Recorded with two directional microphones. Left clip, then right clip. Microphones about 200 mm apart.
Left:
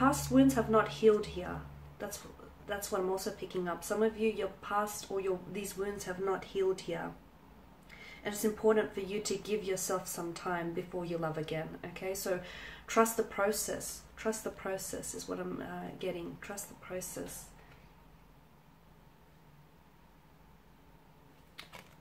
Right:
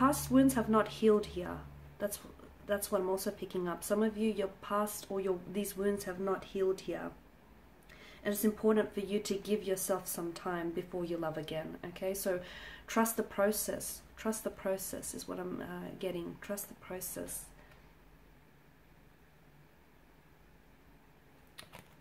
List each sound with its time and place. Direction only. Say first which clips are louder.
0.0 s speech: left 1 dB; 40° right (ahead or behind)
2.6 s speech: right 2 dB; 40° right (ahead or behind)
8.2 s speech: even; 40° right (ahead or behind)